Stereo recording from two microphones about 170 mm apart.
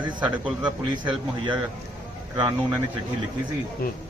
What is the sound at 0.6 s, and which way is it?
Speech, 25° right (ahead or behind).